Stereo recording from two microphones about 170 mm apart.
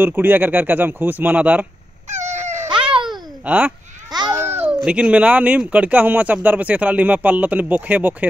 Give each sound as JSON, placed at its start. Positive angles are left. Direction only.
{"t": 0.0, "sound": "speech", "side_deg": -10}
{"t": 2.0, "sound": "a sound", "side_deg": -45}
{"t": 2.7, "sound": "babbling", "side_deg": -30}
{"t": 3.1, "sound": "babbling", "side_deg": -10}
{"t": 4.8, "sound": "speech", "side_deg": -5}